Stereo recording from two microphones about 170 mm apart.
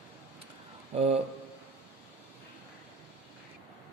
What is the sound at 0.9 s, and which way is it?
Speech, 35° right (ahead or behind).